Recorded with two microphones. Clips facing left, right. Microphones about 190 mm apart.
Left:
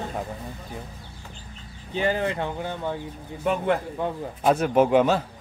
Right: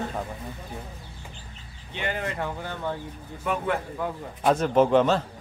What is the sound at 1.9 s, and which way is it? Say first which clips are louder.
Speech: left 6 dB; 35° left (ahead or behind).